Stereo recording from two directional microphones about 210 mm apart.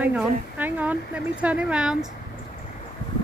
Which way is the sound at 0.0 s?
5° right (ahead or behind).